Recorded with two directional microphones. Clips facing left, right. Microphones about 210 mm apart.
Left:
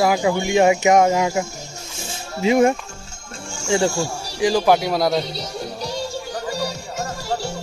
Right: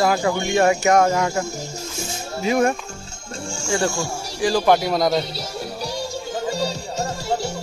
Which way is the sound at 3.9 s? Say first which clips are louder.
Left 2 dB; 15° left (ahead or behind).